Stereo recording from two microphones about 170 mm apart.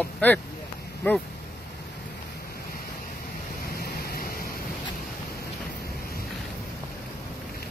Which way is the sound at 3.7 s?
60° left (ahead or behind).